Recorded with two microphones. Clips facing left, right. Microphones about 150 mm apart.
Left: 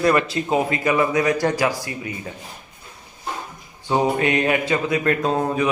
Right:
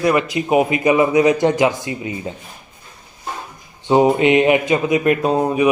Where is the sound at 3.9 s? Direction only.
20° right (ahead or behind).